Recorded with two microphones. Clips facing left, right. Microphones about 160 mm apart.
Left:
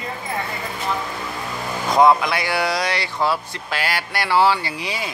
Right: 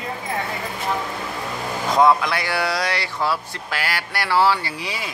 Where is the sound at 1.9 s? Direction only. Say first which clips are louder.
Left 2 dB; 15° left (ahead or behind).